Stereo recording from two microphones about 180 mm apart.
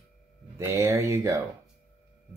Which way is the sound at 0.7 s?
15° right (ahead or behind).